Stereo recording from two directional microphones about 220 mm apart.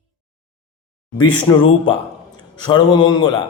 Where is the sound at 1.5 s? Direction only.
15° left (ahead or behind).